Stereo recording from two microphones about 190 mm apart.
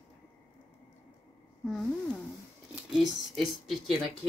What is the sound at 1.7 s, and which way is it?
Speech, centre (ahead or behind).